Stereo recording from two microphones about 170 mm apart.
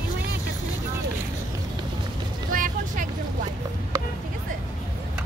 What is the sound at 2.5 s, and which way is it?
Vehicle, 55° right (ahead or behind).